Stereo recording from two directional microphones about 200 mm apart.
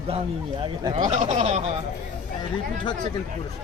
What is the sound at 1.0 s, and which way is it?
Speech, 35° right (ahead or behind).